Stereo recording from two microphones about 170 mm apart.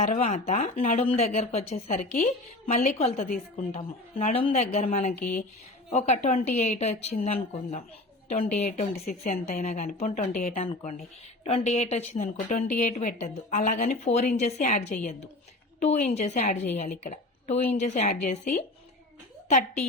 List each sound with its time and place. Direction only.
0.0 s a man's voice: 40° left (ahead or behind)
5.2 s speech: 50° left (ahead or behind)
5.9 s a man's voice: 40° left (ahead or behind)
11.4 s a man's voice: 40° left (ahead or behind); by 14.1 s 55° left (ahead or behind)
14.1 s a man's voice: 40° left (ahead or behind)